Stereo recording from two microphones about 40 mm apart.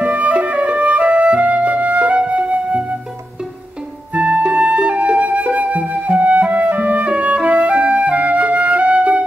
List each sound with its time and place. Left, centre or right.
0.0 s music: right
4.4 s music: right
5.2 s flute: right
6.8 s music: right
8.4 s flute: right